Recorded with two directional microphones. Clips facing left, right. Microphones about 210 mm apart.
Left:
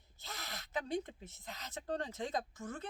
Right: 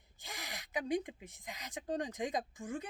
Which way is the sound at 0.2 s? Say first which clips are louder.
Right 1 dB; 15° right (ahead or behind).